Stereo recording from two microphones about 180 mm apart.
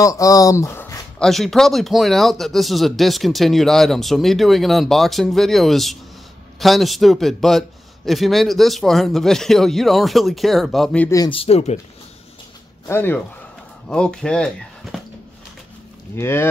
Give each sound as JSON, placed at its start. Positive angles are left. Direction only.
{"t": 0.0, "sound": "speech", "side_deg": 20}
{"t": 1.2, "sound": "speech", "side_deg": 0}
{"t": 11.1, "sound": "speech", "side_deg": 20}
{"t": 11.3, "sound": "speech", "side_deg": 35}
{"t": 12.8, "sound": "speech", "side_deg": 10}
{"t": 16.2, "sound": "speech", "side_deg": 15}